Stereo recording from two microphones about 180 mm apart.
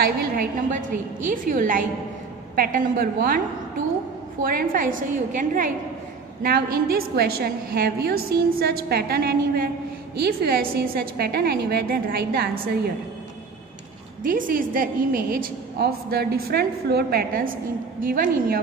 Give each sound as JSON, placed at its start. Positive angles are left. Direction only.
{"t": 0.0, "sound": "a woman's voice", "side_deg": -50}
{"t": 14.2, "sound": "a woman's voice", "side_deg": -50}